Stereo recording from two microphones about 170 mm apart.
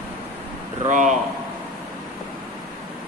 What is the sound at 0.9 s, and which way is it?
Speech, 45° right (ahead or behind).